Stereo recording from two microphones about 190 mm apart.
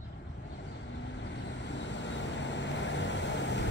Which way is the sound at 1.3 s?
70° left (ahead or behind).